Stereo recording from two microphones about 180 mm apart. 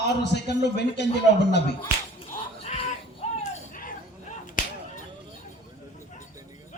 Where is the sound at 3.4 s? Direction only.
50° left (ahead or behind).